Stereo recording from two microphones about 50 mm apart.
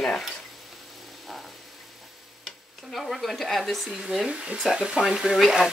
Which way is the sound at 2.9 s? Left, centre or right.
Centre.